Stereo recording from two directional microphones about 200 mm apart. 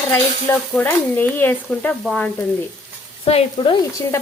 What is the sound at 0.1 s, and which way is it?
Speech, 10° left (ahead or behind).